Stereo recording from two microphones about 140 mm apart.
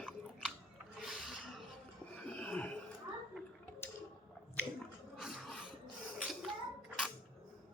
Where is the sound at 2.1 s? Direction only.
10° left (ahead or behind).